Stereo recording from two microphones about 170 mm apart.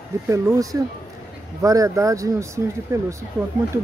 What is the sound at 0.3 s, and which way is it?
Speech, 20° right (ahead or behind).